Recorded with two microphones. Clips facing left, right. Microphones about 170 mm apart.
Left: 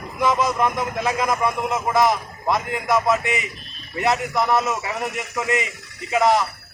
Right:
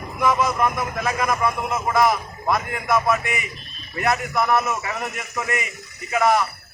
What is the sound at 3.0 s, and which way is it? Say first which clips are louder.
A man's voice: left 2 dB; 20° left (ahead or behind).